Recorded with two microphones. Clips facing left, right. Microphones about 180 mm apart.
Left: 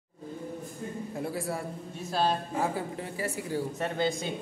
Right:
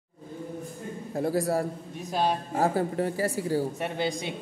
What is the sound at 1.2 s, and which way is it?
Speech, 40° right (ahead or behind).